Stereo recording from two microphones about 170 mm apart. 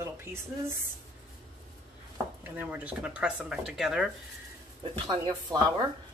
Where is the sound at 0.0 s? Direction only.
15° right (ahead or behind).